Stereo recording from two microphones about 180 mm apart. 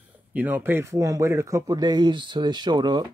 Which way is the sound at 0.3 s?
10° right (ahead or behind).